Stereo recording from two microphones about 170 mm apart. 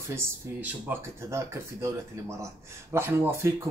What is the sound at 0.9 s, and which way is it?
Speech, 10° right (ahead or behind).